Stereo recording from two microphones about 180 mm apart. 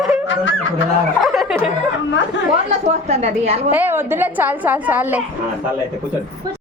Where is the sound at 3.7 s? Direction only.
10° right (ahead or behind).